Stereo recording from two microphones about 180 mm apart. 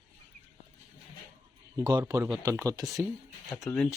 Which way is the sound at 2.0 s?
15° right (ahead or behind).